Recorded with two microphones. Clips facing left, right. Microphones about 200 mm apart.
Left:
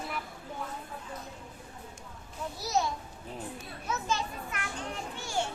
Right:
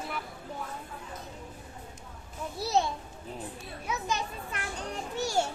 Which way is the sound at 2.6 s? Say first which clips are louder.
Right 3 dB; 30° right (ahead or behind).